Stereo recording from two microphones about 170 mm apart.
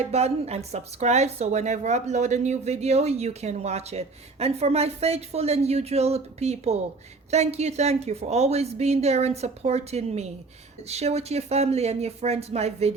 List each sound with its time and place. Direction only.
0.0 s speech: 40° right (ahead or behind)